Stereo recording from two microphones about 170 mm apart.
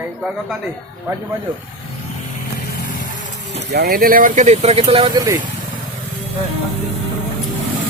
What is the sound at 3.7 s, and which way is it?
Speech, 65° right (ahead or behind).